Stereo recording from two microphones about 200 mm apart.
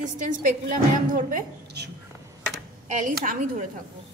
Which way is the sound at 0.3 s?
45° right (ahead or behind).